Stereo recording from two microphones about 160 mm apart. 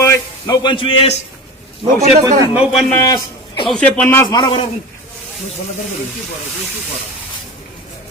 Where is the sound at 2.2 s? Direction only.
20° right (ahead or behind).